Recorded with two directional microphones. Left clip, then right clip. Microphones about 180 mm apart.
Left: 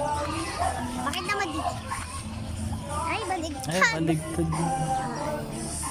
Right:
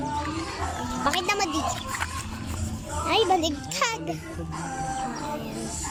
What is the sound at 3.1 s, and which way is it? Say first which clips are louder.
Speech: right 13 dB; 10° right (ahead or behind).